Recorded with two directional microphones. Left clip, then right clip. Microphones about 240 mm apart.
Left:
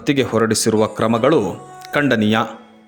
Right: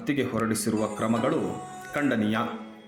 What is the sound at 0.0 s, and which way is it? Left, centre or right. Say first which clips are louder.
A man's voice: left 11 dB; left.